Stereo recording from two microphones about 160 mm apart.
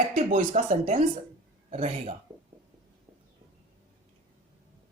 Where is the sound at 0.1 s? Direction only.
50° right (ahead or behind).